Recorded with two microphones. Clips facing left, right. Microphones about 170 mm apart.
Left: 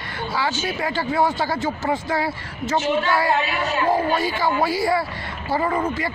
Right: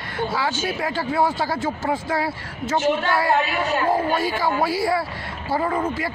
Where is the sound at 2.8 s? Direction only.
50° right (ahead or behind).